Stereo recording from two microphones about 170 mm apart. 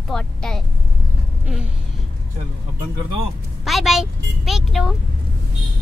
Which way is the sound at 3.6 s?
Centre (ahead or behind).